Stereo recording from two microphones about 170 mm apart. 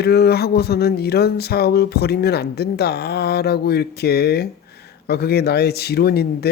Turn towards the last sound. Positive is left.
turn(degrees=70)  # may be behind; listen again after turning